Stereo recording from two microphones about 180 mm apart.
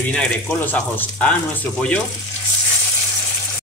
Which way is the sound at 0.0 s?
5° left (ahead or behind).